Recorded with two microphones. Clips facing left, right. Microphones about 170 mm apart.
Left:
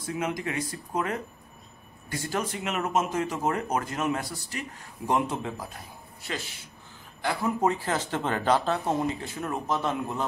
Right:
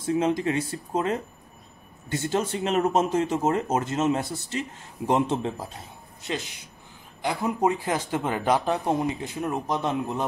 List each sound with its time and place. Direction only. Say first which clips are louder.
0.0 s speech: right 7 dB; 30° right (ahead or behind)